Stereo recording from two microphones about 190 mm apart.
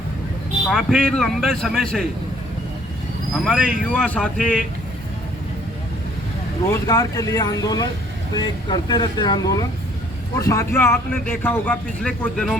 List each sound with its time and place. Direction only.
0.7 s speech: centre (ahead or behind)
3.3 s speech: centre (ahead or behind)
6.7 s speech: 20° left (ahead or behind); by 12.5 s 5° left (ahead or behind)